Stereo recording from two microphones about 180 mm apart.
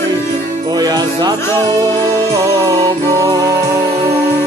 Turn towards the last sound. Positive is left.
turn(degrees=-20)  # may be behind; listen again after turning